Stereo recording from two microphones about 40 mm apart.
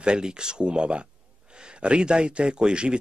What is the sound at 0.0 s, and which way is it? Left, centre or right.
Speech, right.